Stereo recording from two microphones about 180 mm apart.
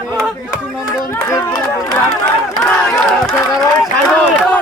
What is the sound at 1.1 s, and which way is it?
Speech, 15° left (ahead or behind).